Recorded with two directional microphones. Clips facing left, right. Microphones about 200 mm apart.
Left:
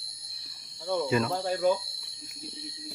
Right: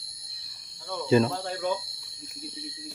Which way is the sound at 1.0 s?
30° right (ahead or behind).